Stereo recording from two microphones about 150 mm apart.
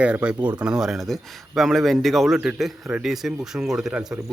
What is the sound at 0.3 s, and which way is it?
Speech, 30° right (ahead or behind).